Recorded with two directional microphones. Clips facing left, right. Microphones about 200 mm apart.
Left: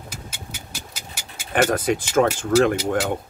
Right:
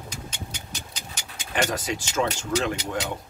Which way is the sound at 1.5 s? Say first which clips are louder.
Left 7 dB; 55° left (ahead or behind).